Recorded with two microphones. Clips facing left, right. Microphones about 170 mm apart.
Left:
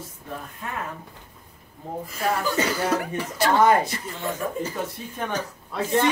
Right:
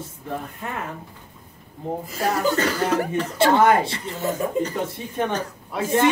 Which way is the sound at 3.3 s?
25° right (ahead or behind).